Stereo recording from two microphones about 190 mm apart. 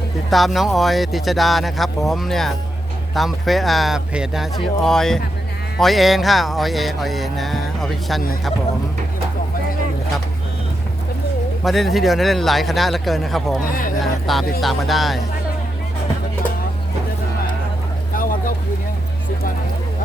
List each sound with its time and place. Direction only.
0.3 s music: centre (ahead or behind)
11.6 s music: centre (ahead or behind)
13.7 s speech: 50° left (ahead or behind)
14.0 s music: centre (ahead or behind)
18.1 s vehicle: 45° left (ahead or behind)